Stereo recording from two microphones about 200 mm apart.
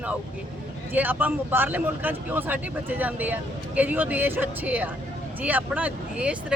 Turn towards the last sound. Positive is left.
turn(degrees=-5)  # may be behind; listen again after turning